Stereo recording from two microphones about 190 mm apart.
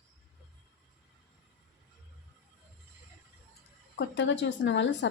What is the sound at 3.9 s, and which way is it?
Speech, 70° left (ahead or behind).